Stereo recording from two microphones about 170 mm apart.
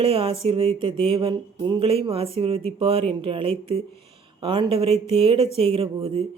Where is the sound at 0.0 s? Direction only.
30° right (ahead or behind).